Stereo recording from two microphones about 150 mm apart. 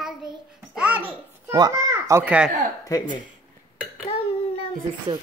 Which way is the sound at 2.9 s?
25° left (ahead or behind).